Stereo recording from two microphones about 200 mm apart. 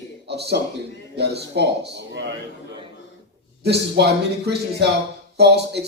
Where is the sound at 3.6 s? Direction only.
55° right (ahead or behind).